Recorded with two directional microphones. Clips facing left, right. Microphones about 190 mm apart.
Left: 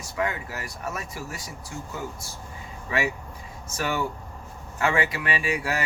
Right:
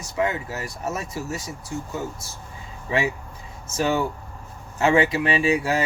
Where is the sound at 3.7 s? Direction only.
25° right (ahead or behind).